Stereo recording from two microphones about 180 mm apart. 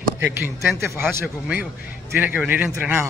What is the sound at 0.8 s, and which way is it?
Speech, 15° right (ahead or behind).